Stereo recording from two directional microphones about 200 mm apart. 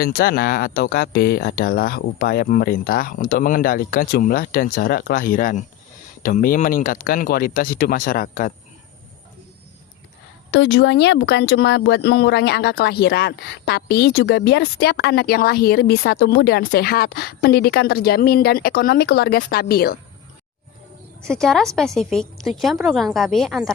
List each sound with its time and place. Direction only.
0.0 s speech: 50° left (ahead or behind)
10.5 s speech: 60° left (ahead or behind)
21.2 s a woman's voice: centre (ahead or behind)